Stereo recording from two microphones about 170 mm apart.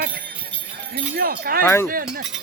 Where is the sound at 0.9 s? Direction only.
65° right (ahead or behind).